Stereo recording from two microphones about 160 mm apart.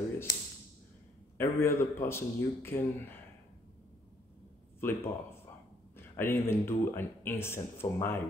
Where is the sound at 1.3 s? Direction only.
15° left (ahead or behind).